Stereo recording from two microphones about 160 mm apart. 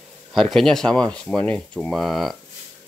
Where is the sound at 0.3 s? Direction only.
Centre (ahead or behind).